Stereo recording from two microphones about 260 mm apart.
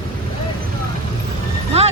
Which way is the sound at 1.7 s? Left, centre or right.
Right.